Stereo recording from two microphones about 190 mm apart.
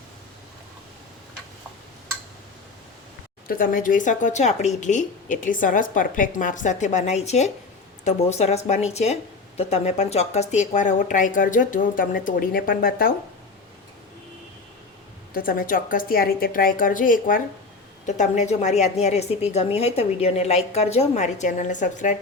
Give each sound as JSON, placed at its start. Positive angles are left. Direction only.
{"t": 3.4, "sound": "speech", "side_deg": 50}
{"t": 15.3, "sound": "speech", "side_deg": 50}